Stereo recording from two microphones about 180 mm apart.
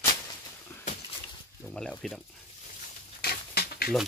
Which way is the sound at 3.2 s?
60° left (ahead or behind).